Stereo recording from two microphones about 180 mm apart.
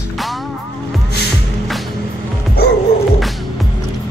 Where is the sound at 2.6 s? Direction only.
60° left (ahead or behind).